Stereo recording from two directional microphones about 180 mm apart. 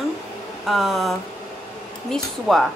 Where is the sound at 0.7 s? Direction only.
Centre (ahead or behind).